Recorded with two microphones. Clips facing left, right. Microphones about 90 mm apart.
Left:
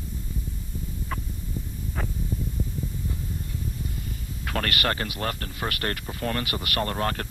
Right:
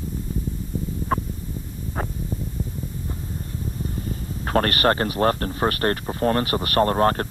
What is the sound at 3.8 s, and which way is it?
Speech, 40° right (ahead or behind).